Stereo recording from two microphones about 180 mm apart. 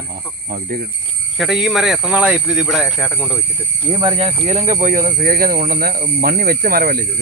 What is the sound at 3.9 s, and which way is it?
Speech, 30° right (ahead or behind).